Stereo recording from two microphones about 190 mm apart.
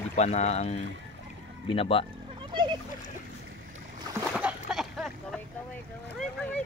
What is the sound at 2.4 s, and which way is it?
Splash, 25° right (ahead or behind).